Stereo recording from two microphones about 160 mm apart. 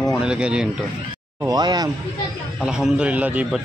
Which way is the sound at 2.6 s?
5° right (ahead or behind).